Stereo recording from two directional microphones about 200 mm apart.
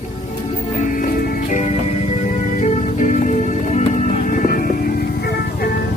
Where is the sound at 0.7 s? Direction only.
40° left (ahead or behind).